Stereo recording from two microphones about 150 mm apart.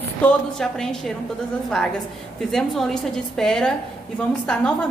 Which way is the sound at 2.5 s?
5° left (ahead or behind).